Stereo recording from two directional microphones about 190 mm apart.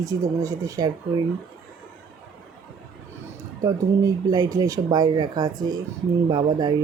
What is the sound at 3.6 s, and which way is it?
Speech, 20° right (ahead or behind).